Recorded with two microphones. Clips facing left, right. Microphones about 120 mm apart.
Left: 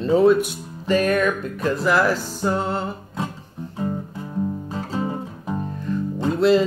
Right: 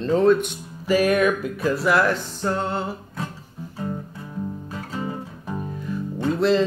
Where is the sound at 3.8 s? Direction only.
20° left (ahead or behind).